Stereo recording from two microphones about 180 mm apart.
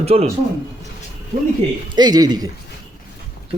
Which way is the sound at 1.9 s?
20° right (ahead or behind).